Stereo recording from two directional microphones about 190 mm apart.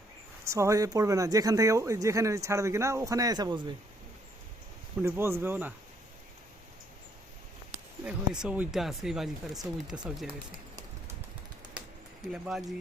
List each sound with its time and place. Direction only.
0.4 s speech: 15° right (ahead or behind)
4.9 s speech: 10° right (ahead or behind)
8.0 s speech: 5° right (ahead or behind)
12.3 s speech: centre (ahead or behind)